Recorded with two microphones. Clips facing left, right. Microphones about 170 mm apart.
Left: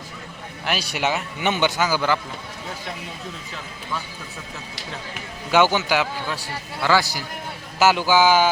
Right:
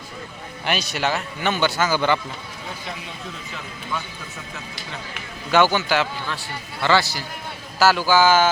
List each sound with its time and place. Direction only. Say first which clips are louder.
0.6 s a man's voice: right 1 dB; 5° left (ahead or behind)
5.5 s a man's voice: even; 15° left (ahead or behind)